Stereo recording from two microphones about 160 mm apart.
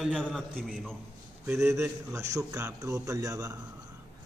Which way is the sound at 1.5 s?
15° right (ahead or behind).